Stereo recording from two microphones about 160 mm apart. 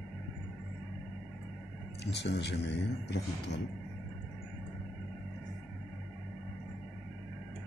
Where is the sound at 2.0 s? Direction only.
90° left.